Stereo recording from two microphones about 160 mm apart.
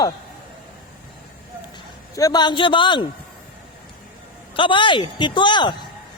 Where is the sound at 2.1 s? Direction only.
25° left (ahead or behind).